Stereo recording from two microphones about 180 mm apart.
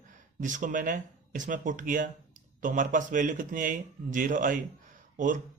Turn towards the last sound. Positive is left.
turn(degrees=-45)  # may be behind; listen again after turning